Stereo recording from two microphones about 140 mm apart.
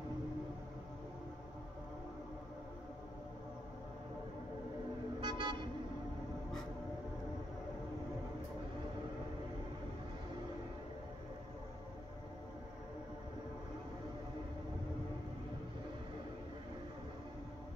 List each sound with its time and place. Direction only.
5.2 s vehicle: 35° right (ahead or behind)